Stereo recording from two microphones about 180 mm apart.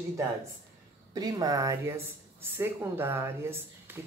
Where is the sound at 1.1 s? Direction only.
20° right (ahead or behind).